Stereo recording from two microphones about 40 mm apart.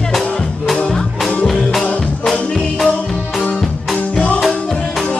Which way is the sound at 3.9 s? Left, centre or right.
Left.